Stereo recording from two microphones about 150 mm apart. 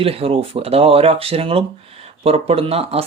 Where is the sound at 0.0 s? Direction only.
40° right (ahead or behind).